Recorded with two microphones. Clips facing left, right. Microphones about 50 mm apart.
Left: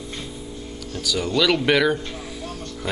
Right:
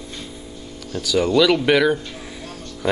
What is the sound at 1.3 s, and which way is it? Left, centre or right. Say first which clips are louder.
Speech: right 2 dB; centre.